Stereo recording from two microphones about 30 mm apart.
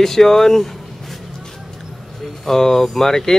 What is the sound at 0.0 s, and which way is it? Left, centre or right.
Speech, centre.